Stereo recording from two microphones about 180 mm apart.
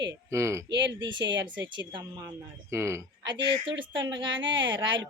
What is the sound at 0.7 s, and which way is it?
Speech, 75° right (ahead or behind).